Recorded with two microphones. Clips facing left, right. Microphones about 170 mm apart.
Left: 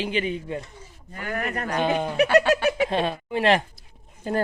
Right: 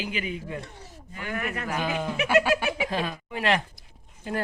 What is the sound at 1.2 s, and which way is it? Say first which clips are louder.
Speech: left 3 dB; 45° left (ahead or behind).